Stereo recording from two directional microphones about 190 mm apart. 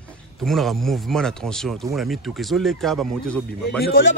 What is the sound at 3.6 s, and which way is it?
Speech, 55° left (ahead or behind).